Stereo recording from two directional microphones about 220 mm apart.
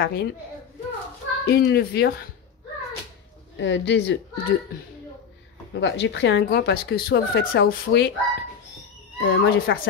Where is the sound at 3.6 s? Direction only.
55° left (ahead or behind).